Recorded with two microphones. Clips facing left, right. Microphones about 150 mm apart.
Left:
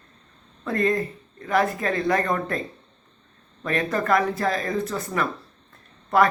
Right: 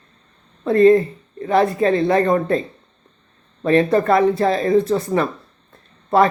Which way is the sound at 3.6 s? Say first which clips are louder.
Right 9 dB; 25° right (ahead or behind).